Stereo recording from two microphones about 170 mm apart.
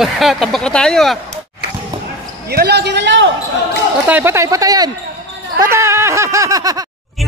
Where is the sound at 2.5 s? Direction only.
75° right (ahead or behind); by 3.3 s 90° right.